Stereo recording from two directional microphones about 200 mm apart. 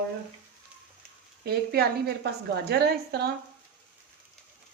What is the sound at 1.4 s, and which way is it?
A woman's voice, 55° right (ahead or behind).